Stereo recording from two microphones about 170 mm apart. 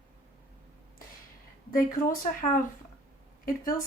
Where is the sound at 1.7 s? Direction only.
55° left (ahead or behind).